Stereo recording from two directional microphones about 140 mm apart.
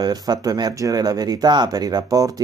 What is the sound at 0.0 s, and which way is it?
Speech, 30° right (ahead or behind).